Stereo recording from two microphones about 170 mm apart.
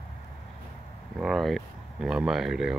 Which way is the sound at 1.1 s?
Centre (ahead or behind).